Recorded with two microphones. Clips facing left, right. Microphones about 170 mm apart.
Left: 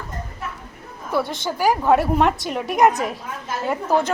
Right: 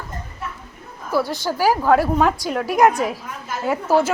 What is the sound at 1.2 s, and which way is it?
Speech, 25° left (ahead or behind).